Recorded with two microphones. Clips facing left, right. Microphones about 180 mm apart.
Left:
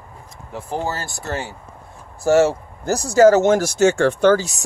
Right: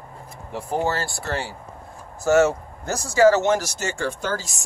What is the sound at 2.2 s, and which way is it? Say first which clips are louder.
Speech: left 2 dB; 30° left (ahead or behind).